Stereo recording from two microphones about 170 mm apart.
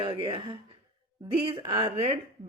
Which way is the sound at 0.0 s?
30° right (ahead or behind).